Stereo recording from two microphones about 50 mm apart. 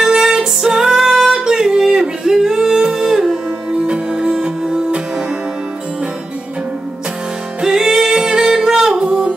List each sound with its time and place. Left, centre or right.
0.0 s music: centre
1.4 s singing: centre
3.8 s music: right
7.6 s music: centre